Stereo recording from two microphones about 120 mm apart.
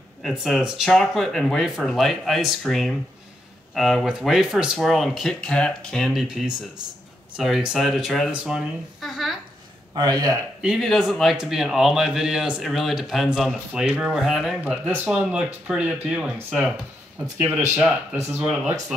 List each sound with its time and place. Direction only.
0.3 s speech: 5° right (ahead or behind)
9.9 s speech: 35° right (ahead or behind)
10.8 s speech: centre (ahead or behind)
18.3 s speech: 10° right (ahead or behind)